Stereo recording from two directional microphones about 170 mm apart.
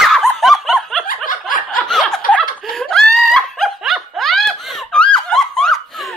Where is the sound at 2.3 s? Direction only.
Centre (ahead or behind).